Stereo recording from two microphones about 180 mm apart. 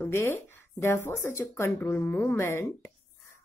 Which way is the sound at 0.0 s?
10° left (ahead or behind).